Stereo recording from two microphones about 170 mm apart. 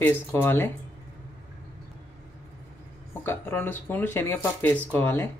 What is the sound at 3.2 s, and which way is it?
Speech, 10° left (ahead or behind).